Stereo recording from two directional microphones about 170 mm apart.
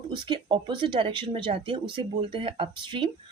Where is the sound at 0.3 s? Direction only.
30° right (ahead or behind).